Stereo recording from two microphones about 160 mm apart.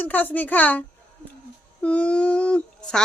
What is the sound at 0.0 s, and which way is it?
A child's voice, 10° left (ahead or behind).